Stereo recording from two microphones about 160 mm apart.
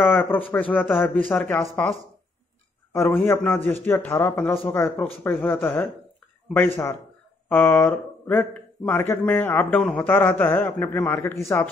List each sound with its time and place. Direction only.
0.0 s a man's voice: 15° left (ahead or behind)
7.4 s a man's voice: 10° left (ahead or behind)